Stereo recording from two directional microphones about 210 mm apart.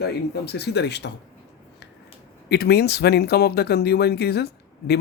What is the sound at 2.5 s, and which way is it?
Speech, 50° left (ahead or behind).